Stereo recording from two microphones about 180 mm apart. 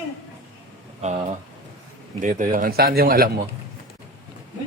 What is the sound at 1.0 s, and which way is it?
Speech, 40° right (ahead or behind).